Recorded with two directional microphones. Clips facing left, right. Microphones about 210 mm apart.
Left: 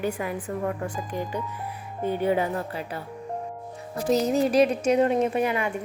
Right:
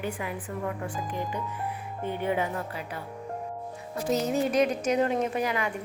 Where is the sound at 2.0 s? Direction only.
35° left (ahead or behind).